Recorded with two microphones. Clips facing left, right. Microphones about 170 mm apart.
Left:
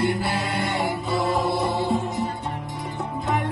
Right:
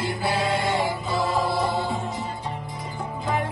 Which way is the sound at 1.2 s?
20° left (ahead or behind).